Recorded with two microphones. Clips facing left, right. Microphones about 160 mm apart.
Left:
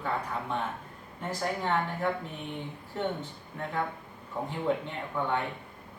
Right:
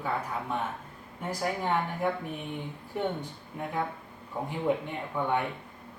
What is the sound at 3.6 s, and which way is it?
Speech, 15° right (ahead or behind).